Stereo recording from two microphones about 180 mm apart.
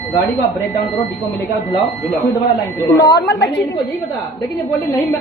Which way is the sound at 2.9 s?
80° left.